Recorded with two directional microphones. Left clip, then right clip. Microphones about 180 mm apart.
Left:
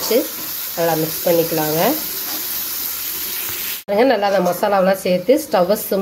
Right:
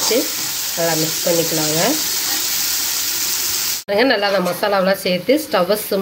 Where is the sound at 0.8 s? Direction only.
Centre (ahead or behind).